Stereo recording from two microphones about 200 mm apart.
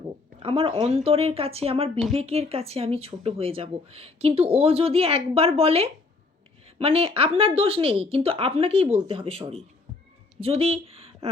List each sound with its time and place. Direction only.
0.3 s speech: 30° right (ahead or behind)